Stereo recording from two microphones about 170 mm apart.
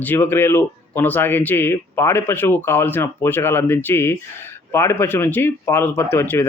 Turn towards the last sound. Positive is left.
turn(degrees=15)  # may be behind; listen again after turning